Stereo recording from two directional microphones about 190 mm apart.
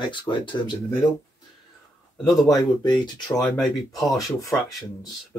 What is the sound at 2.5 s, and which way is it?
Speech, 25° left (ahead or behind).